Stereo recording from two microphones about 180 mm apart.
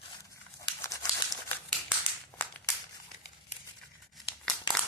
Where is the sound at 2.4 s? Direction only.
10° left (ahead or behind).